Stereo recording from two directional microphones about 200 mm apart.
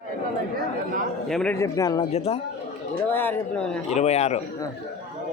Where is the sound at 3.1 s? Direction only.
10° left (ahead or behind).